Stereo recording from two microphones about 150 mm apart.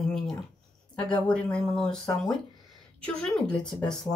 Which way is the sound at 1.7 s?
5° left (ahead or behind).